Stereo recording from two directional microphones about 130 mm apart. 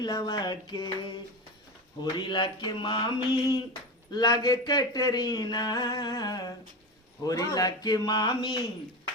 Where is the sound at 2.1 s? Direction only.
35° left (ahead or behind).